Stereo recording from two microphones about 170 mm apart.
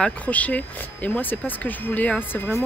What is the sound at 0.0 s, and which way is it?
Speech, 10° left (ahead or behind).